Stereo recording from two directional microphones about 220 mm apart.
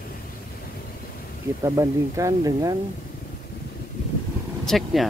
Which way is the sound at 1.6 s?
15° right (ahead or behind).